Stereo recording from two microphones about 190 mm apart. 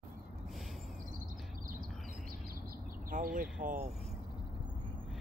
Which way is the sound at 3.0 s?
45° right (ahead or behind).